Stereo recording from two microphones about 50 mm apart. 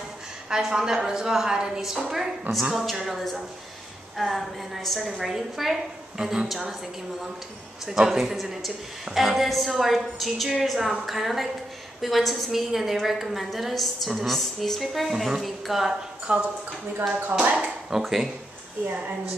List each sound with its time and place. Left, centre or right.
0.5 s a woman's voice: centre
7.8 s a woman's voice: centre
16.3 s speech: right
17.6 s a woman's voice: centre